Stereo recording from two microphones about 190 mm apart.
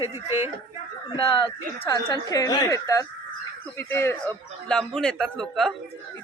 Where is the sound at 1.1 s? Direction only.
30° left (ahead or behind); by 4.4 s 15° left (ahead or behind).